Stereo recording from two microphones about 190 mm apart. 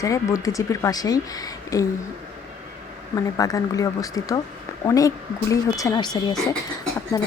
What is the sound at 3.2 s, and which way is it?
A woman's voice, 20° left (ahead or behind).